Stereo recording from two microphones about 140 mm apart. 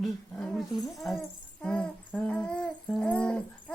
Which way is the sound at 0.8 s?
Centre (ahead or behind).